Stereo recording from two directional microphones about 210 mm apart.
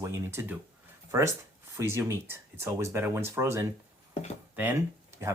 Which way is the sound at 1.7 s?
15° right (ahead or behind).